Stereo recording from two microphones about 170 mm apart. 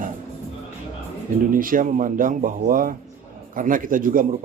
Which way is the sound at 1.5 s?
55° right (ahead or behind).